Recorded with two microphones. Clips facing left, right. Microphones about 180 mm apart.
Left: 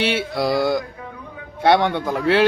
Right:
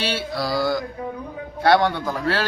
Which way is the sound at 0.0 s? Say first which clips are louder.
Left 4 dB; 20° left (ahead or behind).